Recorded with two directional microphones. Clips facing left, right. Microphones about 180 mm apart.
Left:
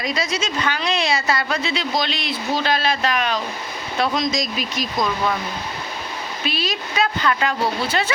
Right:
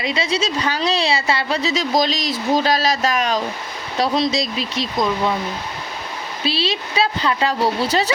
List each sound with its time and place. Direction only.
0.0 s a woman's voice: 30° right (ahead or behind)
6.4 s a woman's voice: 30° right (ahead or behind)